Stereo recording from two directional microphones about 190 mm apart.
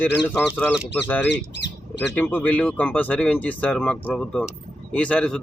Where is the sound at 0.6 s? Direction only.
10° left (ahead or behind).